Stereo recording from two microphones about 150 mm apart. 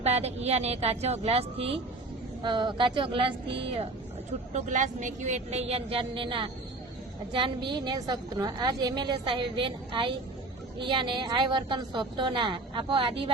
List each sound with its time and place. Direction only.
0.0 s a woman's voice: 45° right (ahead or behind)
4.5 s a woman's voice: 55° right (ahead or behind); by 13.3 s 35° right (ahead or behind)